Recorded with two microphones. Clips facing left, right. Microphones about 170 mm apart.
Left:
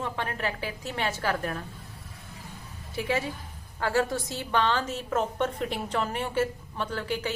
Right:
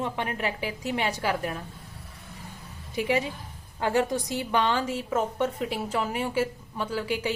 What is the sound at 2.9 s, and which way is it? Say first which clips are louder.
A woman's voice: right 3 dB; 15° right (ahead or behind).